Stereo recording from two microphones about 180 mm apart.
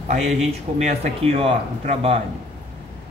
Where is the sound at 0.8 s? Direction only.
35° right (ahead or behind).